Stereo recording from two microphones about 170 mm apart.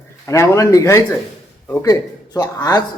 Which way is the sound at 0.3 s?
20° left (ahead or behind).